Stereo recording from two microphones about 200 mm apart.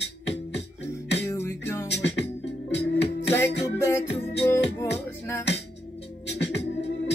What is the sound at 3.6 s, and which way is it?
Music, 15° left (ahead or behind).